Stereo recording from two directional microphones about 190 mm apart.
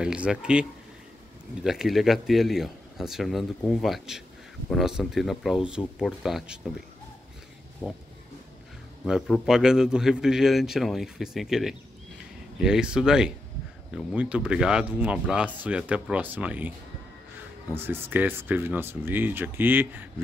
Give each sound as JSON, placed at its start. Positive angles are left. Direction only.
{"t": 0.0, "sound": "a man's voice", "side_deg": -5}
{"t": 7.8, "sound": "a sound", "side_deg": 20}
{"t": 9.0, "sound": "a man's voice", "side_deg": -5}
{"t": 17.7, "sound": "speech", "side_deg": -10}